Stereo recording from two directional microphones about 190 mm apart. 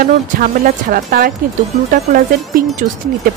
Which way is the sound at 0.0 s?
45° right (ahead or behind).